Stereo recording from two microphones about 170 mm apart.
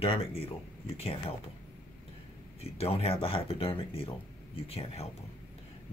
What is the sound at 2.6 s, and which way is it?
Speech, 35° left (ahead or behind).